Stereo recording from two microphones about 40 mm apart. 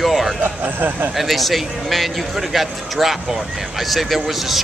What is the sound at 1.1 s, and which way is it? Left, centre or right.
Speech, centre.